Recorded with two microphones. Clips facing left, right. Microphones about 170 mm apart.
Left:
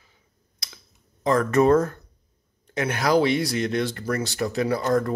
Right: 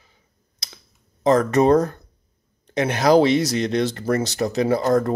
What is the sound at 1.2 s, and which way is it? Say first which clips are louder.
Speech: right 5 dB; 20° right (ahead or behind).